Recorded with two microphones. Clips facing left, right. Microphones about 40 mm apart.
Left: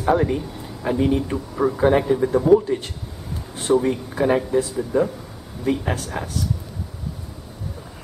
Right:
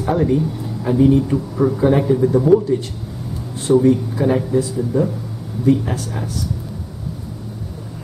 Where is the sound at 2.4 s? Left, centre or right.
Centre.